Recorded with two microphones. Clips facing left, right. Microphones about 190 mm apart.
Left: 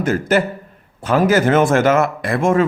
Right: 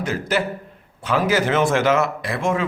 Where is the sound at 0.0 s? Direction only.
50° left (ahead or behind).